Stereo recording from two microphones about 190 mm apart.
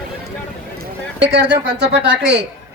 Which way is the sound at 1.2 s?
65° right (ahead or behind).